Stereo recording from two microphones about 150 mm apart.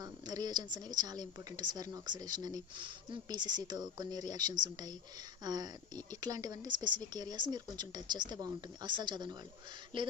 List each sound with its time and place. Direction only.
0.0 s speech: 25° right (ahead or behind)